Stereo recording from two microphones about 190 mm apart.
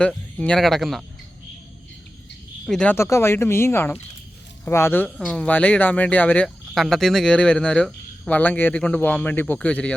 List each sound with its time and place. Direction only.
0.0 s speech: 5° left (ahead or behind)
2.6 s speech: 5° left (ahead or behind)